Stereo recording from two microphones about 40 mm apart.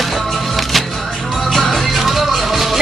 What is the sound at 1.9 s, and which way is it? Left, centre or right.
Music, centre.